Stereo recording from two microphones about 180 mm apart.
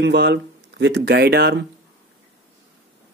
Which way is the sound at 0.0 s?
75° right (ahead or behind).